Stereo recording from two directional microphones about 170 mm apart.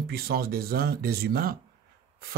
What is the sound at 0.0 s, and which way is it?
Speech, 70° right (ahead or behind).